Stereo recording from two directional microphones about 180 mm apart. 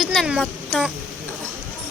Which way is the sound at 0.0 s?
Centre (ahead or behind).